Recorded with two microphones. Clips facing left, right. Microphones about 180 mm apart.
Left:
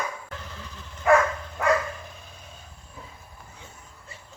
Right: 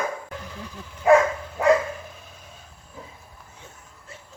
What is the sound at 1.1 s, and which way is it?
Dog, 20° right (ahead or behind).